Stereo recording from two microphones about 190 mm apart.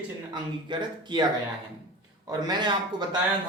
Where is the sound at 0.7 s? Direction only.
25° right (ahead or behind).